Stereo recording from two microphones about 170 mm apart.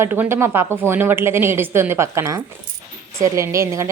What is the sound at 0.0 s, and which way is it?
A woman's voice, 15° right (ahead or behind).